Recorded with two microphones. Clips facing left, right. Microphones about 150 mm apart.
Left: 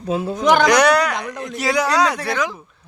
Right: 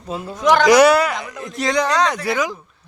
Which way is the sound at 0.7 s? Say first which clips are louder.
Right 3 dB; 5° right (ahead or behind).